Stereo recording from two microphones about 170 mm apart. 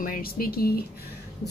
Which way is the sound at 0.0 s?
55° left (ahead or behind).